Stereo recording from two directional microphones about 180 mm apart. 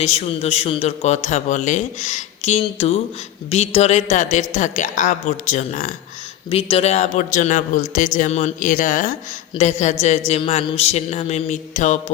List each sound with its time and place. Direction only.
0.0 s a man's voice: 35° left (ahead or behind)